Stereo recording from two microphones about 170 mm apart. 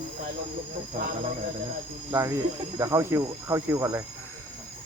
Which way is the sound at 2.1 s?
20° right (ahead or behind).